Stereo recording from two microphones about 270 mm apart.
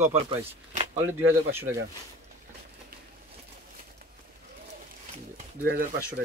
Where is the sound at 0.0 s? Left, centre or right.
Right.